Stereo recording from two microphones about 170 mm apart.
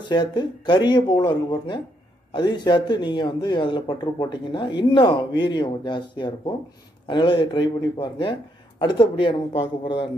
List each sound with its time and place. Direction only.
0.1 s speech: 25° left (ahead or behind)